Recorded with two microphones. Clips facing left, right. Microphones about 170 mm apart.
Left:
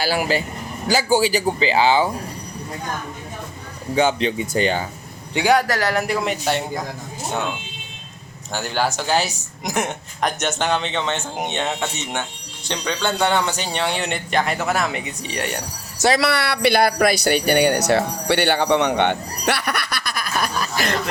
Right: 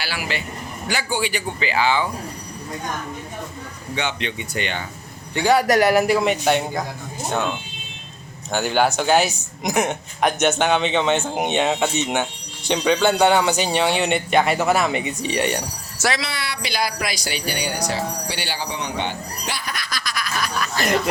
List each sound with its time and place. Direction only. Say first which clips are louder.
0.0 s a man's voice: left 7 dB; 40° left (ahead or behind)
3.9 s a man's voice: left 8 dB; 40° left (ahead or behind)
5.6 s speech: right 6 dB; 15° right (ahead or behind)
6.0 s speech: right 4 dB; 5° right (ahead or behind)
8.5 s speech: right 4 dB; centre (ahead or behind)
16.2 s speech: left 10 dB; 65° left (ahead or behind)
20.4 s chuckle: left 4 dB; 50° left (ahead or behind)
20.8 s speech: right 1 dB; 10° left (ahead or behind)